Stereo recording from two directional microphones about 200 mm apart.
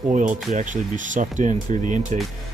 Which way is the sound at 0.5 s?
40° right (ahead or behind).